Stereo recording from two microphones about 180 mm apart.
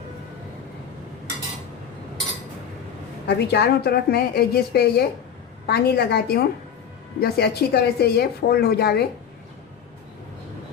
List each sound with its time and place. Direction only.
3.2 s a woman's voice: 65° left (ahead or behind)